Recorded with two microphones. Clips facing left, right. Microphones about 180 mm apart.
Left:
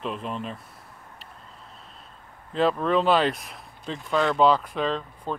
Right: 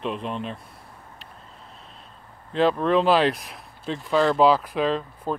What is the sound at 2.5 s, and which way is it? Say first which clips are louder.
Speech: right 2 dB; centre (ahead or behind).